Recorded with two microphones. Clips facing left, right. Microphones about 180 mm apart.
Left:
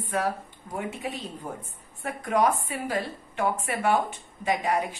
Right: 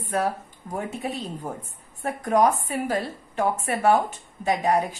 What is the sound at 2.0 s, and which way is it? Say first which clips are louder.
A woman's voice: right 4 dB; 40° right (ahead or behind).